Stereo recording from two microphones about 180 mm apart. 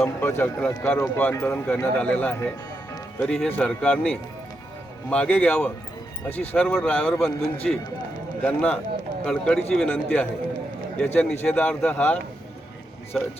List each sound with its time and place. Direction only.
0.2 s a man's voice: 15° left (ahead or behind)